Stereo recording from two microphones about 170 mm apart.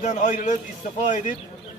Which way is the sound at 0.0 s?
45° left (ahead or behind).